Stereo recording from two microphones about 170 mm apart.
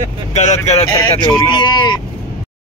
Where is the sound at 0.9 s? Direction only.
25° left (ahead or behind).